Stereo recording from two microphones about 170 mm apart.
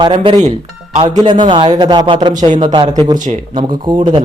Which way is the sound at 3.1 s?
45° right (ahead or behind).